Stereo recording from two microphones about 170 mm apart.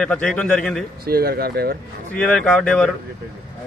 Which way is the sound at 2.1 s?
5° left (ahead or behind).